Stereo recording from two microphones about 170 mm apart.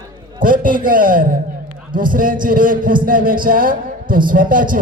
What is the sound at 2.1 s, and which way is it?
Mantra, 55° right (ahead or behind).